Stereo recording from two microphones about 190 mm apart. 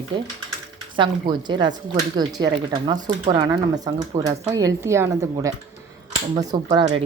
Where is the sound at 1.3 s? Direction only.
25° right (ahead or behind).